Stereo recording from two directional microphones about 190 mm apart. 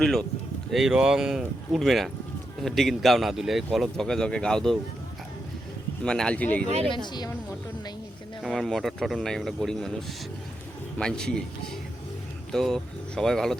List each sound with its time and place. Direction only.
0.0 s a man's voice: centre (ahead or behind)
6.0 s a man's voice: 5° left (ahead or behind)
6.9 s speech: 25° left (ahead or behind)
8.4 s a man's voice: centre (ahead or behind)
12.5 s a man's voice: centre (ahead or behind)